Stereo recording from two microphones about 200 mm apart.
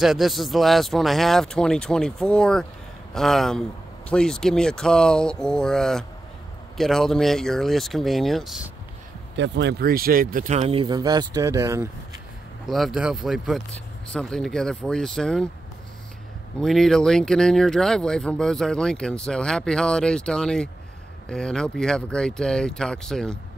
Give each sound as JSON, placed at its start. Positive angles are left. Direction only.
{"t": 0.0, "sound": "speech", "side_deg": 0}
{"t": 9.4, "sound": "speech", "side_deg": -60}
{"t": 12.6, "sound": "speech", "side_deg": 0}
{"t": 16.5, "sound": "speech", "side_deg": 0}